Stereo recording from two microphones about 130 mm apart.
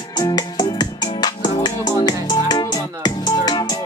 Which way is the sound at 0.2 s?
30° left (ahead or behind).